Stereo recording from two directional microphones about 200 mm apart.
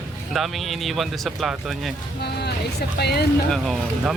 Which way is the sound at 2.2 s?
55° left (ahead or behind).